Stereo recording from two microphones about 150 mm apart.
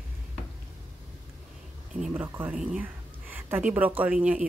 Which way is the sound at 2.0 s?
10° right (ahead or behind).